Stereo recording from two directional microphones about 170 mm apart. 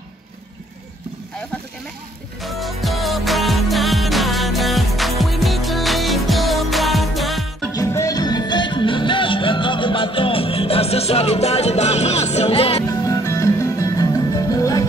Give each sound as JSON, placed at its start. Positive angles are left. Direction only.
{"t": 2.4, "sound": "music", "side_deg": 0}
{"t": 7.7, "sound": "music", "side_deg": 20}
{"t": 13.0, "sound": "music", "side_deg": 20}